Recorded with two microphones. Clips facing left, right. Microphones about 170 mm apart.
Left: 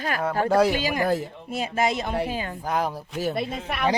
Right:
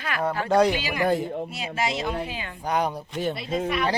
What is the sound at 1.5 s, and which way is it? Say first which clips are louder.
Speech: left 4 dB; 50° left (ahead or behind).